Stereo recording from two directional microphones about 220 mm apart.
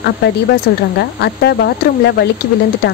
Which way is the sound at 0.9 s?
50° left (ahead or behind).